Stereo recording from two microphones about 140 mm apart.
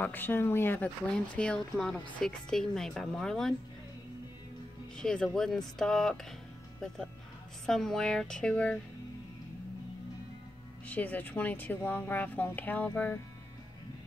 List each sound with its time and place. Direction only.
0.0 s speech: 15° left (ahead or behind)
4.9 s speech: 5° left (ahead or behind)
7.6 s speech: 5° left (ahead or behind)
10.9 s speech: 10° left (ahead or behind)